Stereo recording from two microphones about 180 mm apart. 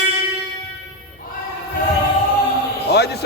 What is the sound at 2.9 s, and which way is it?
Music, 65° left (ahead or behind).